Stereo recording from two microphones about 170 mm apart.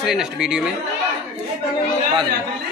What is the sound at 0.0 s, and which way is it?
Speech, centre (ahead or behind).